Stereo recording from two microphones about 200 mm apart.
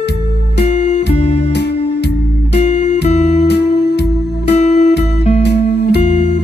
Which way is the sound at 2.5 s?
35° left (ahead or behind).